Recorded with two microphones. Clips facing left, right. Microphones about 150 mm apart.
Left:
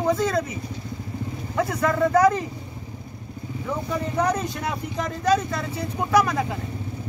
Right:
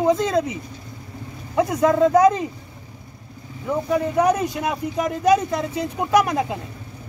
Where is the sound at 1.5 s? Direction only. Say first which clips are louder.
Right 5 dB; 20° right (ahead or behind).